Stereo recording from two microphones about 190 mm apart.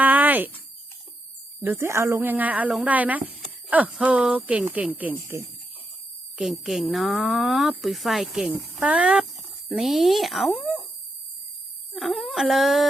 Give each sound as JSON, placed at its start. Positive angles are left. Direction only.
{"t": 0.0, "sound": "cricket", "side_deg": -10}
{"t": 1.6, "sound": "a woman's voice", "side_deg": -15}
{"t": 11.9, "sound": "a woman's voice", "side_deg": 0}